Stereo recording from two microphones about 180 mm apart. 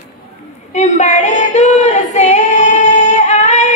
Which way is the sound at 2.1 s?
40° left (ahead or behind).